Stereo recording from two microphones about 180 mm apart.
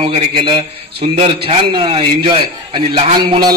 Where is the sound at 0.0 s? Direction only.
30° right (ahead or behind).